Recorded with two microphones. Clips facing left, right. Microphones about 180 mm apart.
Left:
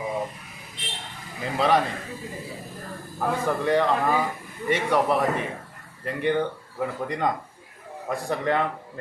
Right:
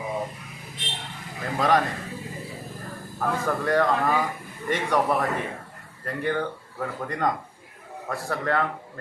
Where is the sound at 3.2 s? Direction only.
15° left (ahead or behind).